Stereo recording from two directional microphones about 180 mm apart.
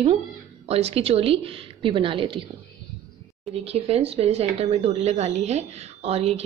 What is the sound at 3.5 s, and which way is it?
Speech, 35° right (ahead or behind).